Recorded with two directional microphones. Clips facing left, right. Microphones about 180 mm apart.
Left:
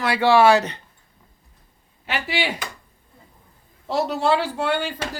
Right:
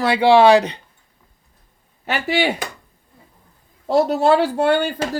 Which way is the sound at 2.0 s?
45° right (ahead or behind).